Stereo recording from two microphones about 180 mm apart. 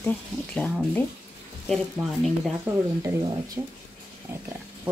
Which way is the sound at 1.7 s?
Centre (ahead or behind).